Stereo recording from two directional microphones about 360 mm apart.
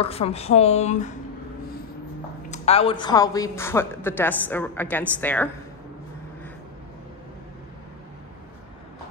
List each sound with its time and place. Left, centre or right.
0.0 s speech: centre
2.5 s speech: centre